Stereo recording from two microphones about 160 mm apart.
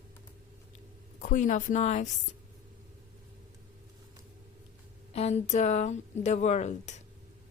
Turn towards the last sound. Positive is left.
turn(degrees=45)  # may be behind; listen again after turning